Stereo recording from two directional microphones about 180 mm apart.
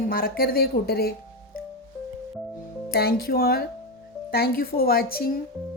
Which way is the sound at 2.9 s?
60° left (ahead or behind).